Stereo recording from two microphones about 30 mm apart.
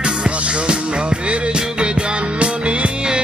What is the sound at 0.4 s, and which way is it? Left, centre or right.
Music, right.